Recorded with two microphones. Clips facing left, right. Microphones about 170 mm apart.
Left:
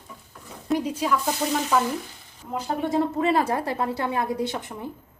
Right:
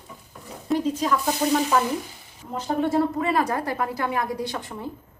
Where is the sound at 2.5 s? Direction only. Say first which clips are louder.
Right 2 dB; 15° left (ahead or behind).